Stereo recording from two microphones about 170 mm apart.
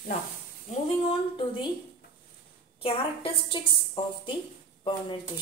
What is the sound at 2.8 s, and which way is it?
A woman's voice, 35° left (ahead or behind).